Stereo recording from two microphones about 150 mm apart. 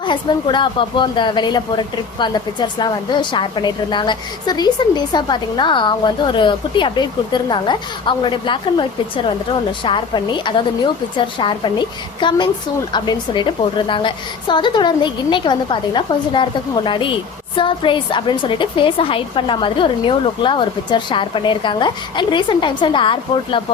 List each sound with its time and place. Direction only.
0.0 s a woman's voice: 30° left (ahead or behind)